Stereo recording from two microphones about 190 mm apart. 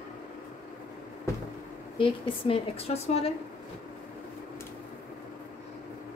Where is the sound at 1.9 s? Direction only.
30° left (ahead or behind).